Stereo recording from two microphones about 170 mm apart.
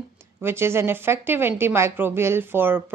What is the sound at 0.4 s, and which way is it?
A woman's voice, 15° right (ahead or behind).